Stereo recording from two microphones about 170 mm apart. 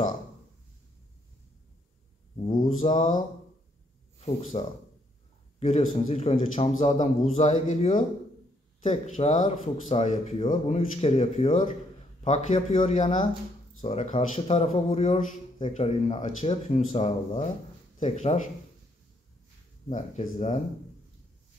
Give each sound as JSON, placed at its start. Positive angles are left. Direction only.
{"t": 2.6, "sound": "a man's voice", "side_deg": 45}
{"t": 11.0, "sound": "a man's voice", "side_deg": 35}
{"t": 19.9, "sound": "a man's voice", "side_deg": 45}